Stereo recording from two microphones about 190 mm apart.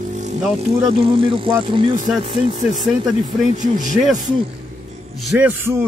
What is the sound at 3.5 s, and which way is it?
Speech, 40° right (ahead or behind).